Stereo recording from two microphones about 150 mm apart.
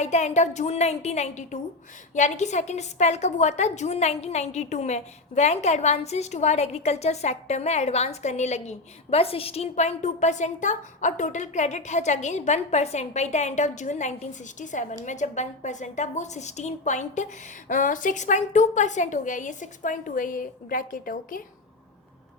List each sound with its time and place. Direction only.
0.0 s a woman's voice: 50° left (ahead or behind); by 21.4 s 70° left (ahead or behind)